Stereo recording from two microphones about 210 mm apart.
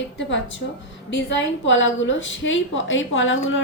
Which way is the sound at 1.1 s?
60° left (ahead or behind).